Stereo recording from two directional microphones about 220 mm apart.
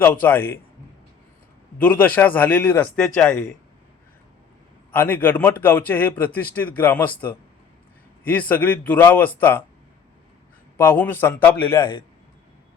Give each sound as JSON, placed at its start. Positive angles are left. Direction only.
{"t": 0.0, "sound": "a man's voice", "side_deg": 10}
{"t": 1.8, "sound": "a man's voice", "side_deg": 10}
{"t": 4.9, "sound": "a man's voice", "side_deg": 10}
{"t": 10.8, "sound": "a man's voice", "side_deg": 10}
{"t": 11.8, "sound": "a man's voice", "side_deg": 20}